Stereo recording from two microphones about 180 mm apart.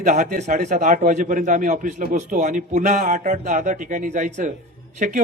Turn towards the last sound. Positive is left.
turn(degrees=-45)  # may be behind; listen again after turning